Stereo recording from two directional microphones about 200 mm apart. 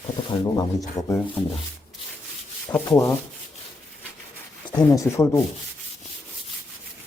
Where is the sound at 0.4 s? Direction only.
20° left (ahead or behind).